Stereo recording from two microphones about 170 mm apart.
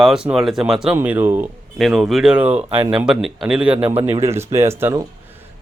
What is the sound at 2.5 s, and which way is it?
Speech, 35° right (ahead or behind).